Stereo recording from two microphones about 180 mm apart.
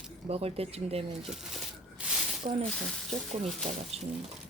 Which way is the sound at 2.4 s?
30° right (ahead or behind).